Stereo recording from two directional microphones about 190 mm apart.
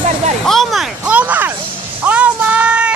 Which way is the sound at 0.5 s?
Centre (ahead or behind).